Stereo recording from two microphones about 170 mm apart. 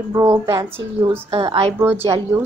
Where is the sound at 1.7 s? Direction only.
15° right (ahead or behind).